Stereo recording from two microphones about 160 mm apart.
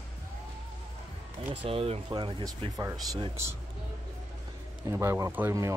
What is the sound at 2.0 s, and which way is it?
Speech, 25° right (ahead or behind).